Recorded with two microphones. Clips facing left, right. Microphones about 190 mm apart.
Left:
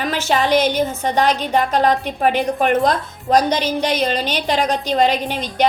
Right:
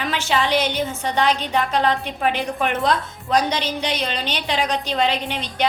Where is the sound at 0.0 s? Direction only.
40° left (ahead or behind).